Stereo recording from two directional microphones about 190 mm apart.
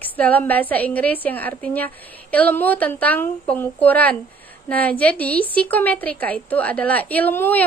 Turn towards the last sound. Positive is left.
turn(degrees=10)  # may be behind; listen again after turning